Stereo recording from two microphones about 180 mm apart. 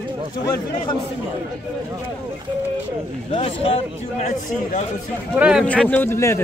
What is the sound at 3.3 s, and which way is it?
Speech, 35° left (ahead or behind).